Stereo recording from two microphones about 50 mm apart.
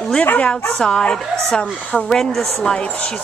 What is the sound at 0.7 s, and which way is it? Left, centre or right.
Speech, centre.